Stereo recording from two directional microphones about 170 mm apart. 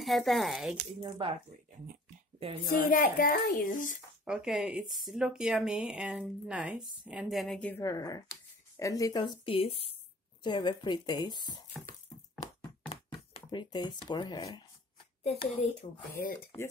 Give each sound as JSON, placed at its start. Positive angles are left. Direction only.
{"t": 0.0, "sound": "speech", "side_deg": 0}
{"t": 1.0, "sound": "speech", "side_deg": -30}
{"t": 2.7, "sound": "a child's voice", "side_deg": 55}
{"t": 4.2, "sound": "speech", "side_deg": -5}
{"t": 7.7, "sound": "speech", "side_deg": 20}
{"t": 13.3, "sound": "speech", "side_deg": 25}
{"t": 15.2, "sound": "speech", "side_deg": 40}